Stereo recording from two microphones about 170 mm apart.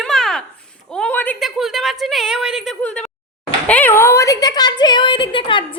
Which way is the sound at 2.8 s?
5° left (ahead or behind).